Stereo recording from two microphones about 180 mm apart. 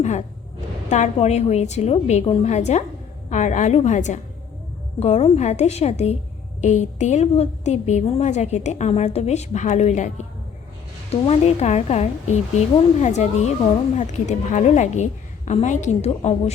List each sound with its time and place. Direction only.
0.0 s a woman's voice: 40° left (ahead or behind)